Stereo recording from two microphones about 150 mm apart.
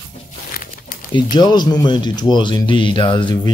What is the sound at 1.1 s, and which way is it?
Speech, 30° left (ahead or behind).